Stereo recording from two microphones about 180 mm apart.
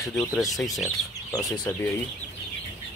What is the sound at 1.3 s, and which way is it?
Speech, 20° left (ahead or behind).